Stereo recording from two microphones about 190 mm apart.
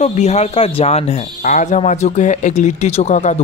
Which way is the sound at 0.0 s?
35° left (ahead or behind).